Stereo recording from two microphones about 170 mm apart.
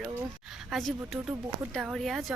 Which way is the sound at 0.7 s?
Centre (ahead or behind).